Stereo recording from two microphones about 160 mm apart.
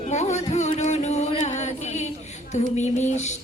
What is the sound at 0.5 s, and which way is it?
Singing, 45° left (ahead or behind).